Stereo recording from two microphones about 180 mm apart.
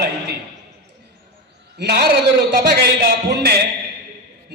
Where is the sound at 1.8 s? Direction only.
65° right (ahead or behind).